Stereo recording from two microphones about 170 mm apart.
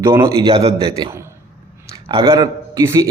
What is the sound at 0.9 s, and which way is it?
A man's voice, 15° right (ahead or behind).